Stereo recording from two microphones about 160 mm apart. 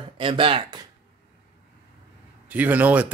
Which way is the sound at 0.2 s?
30° right (ahead or behind).